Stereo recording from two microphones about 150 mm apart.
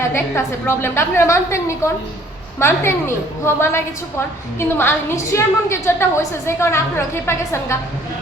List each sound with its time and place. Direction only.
0.1 s a woman's voice: 15° left (ahead or behind)